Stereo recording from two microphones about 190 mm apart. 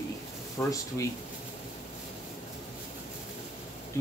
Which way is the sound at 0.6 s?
20° left (ahead or behind).